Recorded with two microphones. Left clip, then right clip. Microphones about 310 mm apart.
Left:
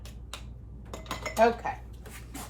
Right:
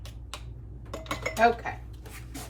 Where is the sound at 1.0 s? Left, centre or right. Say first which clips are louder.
Right 1 dB; centre.